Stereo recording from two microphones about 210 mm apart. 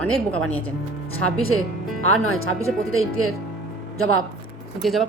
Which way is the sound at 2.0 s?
85° left.